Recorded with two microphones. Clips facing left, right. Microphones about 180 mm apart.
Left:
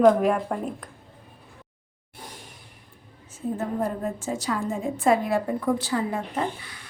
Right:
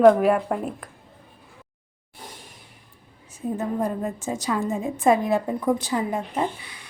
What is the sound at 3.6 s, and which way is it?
A woman's voice, 15° right (ahead or behind).